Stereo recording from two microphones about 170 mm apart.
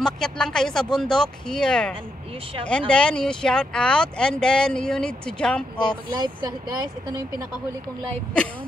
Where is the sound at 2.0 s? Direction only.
35° right (ahead or behind).